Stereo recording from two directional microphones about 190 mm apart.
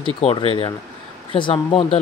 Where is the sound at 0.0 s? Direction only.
30° left (ahead or behind).